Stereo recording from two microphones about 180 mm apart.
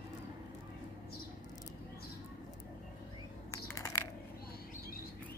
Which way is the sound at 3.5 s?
15° left (ahead or behind).